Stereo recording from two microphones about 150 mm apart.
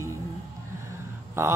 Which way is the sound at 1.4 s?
15° right (ahead or behind).